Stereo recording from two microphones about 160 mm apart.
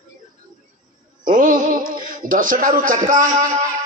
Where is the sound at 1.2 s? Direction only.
55° right (ahead or behind).